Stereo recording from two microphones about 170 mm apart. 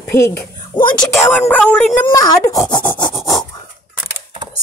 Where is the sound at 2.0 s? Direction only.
25° left (ahead or behind).